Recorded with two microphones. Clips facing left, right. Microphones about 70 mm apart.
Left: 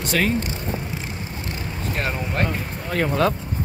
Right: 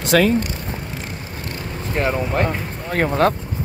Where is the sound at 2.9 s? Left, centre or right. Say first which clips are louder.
Right 3 dB; right.